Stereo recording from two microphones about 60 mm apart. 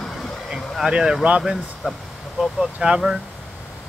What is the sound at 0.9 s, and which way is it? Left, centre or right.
Speech, centre.